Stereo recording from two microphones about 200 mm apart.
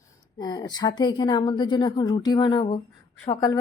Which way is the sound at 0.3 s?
20° left (ahead or behind).